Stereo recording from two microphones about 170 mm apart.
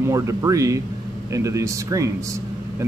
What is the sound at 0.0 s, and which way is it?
Speech, 15° right (ahead or behind).